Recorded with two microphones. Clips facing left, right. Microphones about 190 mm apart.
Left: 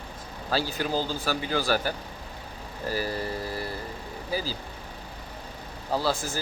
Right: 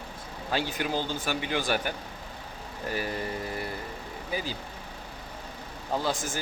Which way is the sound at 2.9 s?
35° left (ahead or behind).